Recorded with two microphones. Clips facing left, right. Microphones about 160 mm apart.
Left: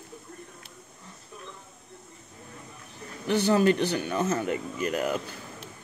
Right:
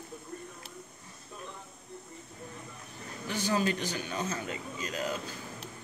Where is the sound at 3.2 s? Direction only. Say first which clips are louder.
Left 8 dB; 60° left (ahead or behind).